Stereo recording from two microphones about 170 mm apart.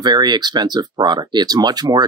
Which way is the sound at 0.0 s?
25° right (ahead or behind).